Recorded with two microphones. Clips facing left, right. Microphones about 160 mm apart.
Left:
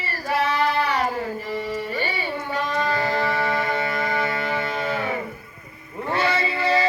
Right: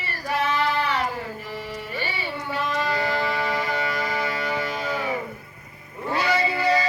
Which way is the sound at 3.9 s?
55° left (ahead or behind).